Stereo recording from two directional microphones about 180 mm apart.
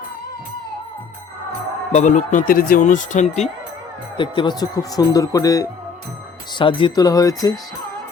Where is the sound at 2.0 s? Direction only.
45° left (ahead or behind).